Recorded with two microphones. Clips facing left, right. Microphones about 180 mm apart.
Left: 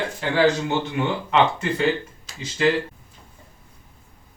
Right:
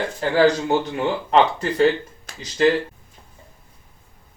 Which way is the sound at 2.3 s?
55° right (ahead or behind).